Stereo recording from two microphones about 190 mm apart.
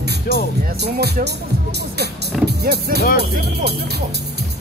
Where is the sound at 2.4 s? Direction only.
60° right (ahead or behind).